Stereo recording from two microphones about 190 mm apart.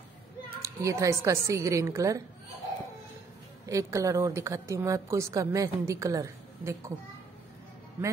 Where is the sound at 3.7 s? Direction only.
15° right (ahead or behind).